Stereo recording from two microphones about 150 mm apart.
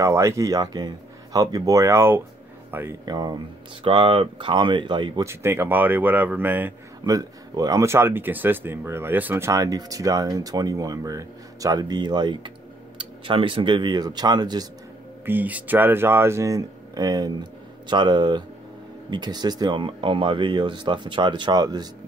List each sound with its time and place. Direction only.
0.0 s speech: 20° right (ahead or behind)
3.1 s speech: 25° right (ahead or behind)
5.2 s speech: 15° right (ahead or behind)
7.1 s speech: 25° right (ahead or behind)
15.2 s speech: 10° right (ahead or behind); by 21.8 s 25° right (ahead or behind)